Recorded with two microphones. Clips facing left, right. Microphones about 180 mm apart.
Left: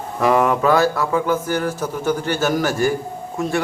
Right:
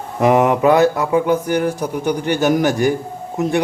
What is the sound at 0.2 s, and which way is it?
A man's voice, 20° right (ahead or behind).